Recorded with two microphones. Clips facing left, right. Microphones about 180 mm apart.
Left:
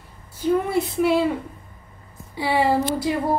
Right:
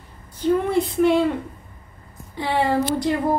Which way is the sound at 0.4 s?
5° left (ahead or behind).